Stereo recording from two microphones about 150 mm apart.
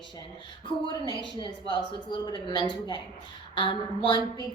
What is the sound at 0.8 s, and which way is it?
A woman's voice, 30° left (ahead or behind).